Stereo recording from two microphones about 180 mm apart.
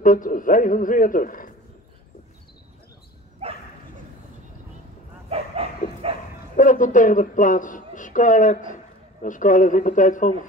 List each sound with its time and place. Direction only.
0.0 s a man's voice: 50° left (ahead or behind)
3.4 s bow-wow: 35° right (ahead or behind)
5.3 s dog: 35° right (ahead or behind)
6.5 s speech: 45° left (ahead or behind)